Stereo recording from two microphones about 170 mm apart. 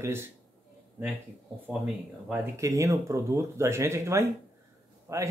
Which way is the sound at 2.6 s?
20° right (ahead or behind).